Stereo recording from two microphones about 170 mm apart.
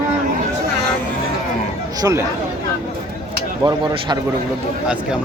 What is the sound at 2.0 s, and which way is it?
Speech, 20° right (ahead or behind).